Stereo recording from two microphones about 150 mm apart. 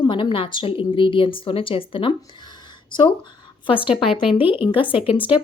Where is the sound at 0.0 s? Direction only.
30° left (ahead or behind).